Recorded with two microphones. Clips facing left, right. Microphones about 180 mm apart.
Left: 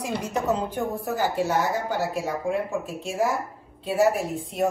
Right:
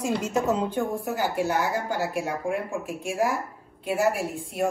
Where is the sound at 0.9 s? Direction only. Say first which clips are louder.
Left 1 dB; 15° right (ahead or behind).